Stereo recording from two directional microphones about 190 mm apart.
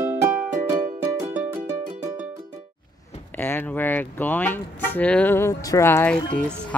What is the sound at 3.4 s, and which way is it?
Music, 10° left (ahead or behind).